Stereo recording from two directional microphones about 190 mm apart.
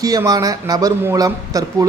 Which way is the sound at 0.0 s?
20° right (ahead or behind).